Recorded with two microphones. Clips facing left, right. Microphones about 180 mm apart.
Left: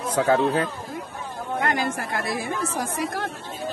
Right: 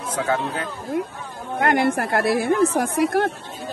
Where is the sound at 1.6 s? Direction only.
65° right (ahead or behind).